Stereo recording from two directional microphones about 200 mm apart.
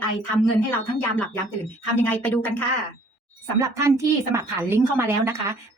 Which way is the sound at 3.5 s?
15° right (ahead or behind).